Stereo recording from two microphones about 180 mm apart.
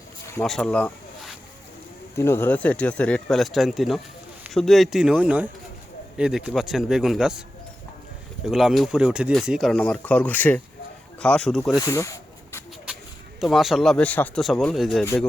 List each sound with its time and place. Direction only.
0.4 s speech: 5° left (ahead or behind)
2.1 s speech: 15° left (ahead or behind); by 7.4 s 5° right (ahead or behind)
8.4 s speech: centre (ahead or behind)
11.8 s a sound: 15° left (ahead or behind)
13.4 s speech: centre (ahead or behind)
15.0 s speech: 15° left (ahead or behind)